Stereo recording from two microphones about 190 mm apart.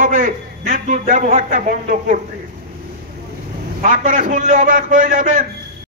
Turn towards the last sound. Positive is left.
turn(degrees=-45)  # may be behind; listen again after turning